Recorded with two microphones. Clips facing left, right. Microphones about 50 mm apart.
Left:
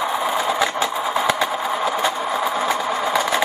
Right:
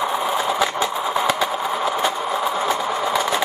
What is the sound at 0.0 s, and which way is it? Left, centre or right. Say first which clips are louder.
Vehicle: even; centre.